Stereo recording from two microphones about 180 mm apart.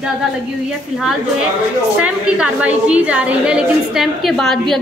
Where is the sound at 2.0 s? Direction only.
5° right (ahead or behind).